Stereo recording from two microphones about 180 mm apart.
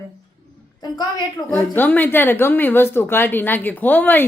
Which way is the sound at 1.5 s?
10° left (ahead or behind).